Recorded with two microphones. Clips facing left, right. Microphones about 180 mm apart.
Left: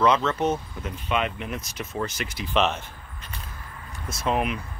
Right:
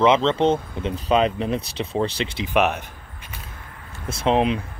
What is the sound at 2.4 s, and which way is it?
Speech, 15° right (ahead or behind).